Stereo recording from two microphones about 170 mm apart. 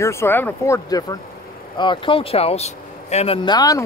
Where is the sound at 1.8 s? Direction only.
30° left (ahead or behind).